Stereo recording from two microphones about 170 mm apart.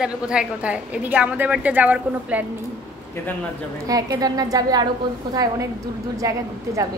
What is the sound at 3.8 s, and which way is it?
A woman's voice, 20° right (ahead or behind).